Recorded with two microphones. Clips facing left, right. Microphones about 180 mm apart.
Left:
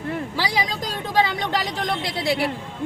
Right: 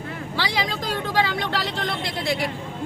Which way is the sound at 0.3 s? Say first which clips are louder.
Even; 10° left (ahead or behind).